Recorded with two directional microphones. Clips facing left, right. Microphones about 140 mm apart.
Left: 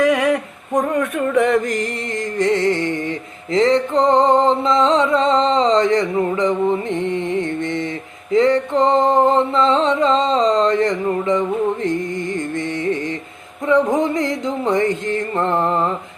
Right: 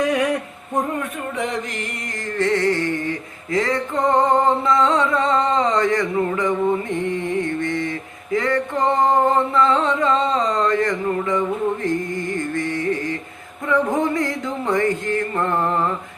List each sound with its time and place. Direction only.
0.0 s a sound: 80° left
0.9 s music: 70° left (ahead or behind); by 1.9 s 45° left (ahead or behind)
2.4 s music: 20° left (ahead or behind)